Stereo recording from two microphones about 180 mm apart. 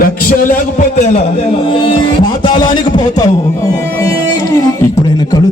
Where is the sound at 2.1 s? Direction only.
25° left (ahead or behind).